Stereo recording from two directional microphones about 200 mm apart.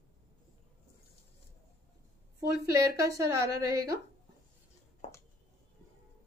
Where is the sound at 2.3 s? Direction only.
15° right (ahead or behind).